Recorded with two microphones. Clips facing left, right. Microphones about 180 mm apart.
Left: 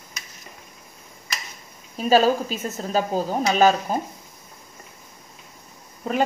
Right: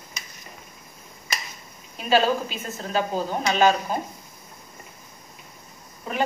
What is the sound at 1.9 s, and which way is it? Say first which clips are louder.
A woman's voice: left 3 dB; 40° left (ahead or behind).